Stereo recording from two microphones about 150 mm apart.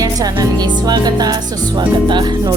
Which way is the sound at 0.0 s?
25° right (ahead or behind).